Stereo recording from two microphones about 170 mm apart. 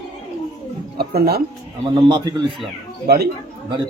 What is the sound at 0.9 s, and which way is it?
Speech, 70° right (ahead or behind).